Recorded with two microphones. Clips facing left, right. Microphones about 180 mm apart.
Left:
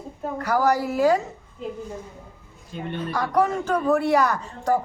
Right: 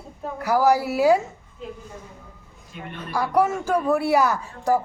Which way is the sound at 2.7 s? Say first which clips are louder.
Left 5 dB; 30° left (ahead or behind).